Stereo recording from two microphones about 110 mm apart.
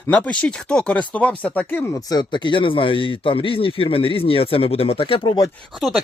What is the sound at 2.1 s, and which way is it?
Speech, 40° left (ahead or behind).